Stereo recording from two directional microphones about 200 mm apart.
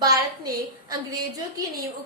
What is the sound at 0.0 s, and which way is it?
A woman's voice, 20° right (ahead or behind).